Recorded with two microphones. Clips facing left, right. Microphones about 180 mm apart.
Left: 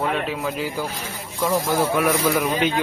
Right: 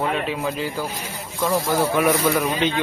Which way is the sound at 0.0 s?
Centre (ahead or behind).